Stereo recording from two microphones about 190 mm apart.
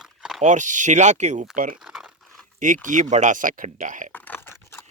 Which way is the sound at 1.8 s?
Centre (ahead or behind).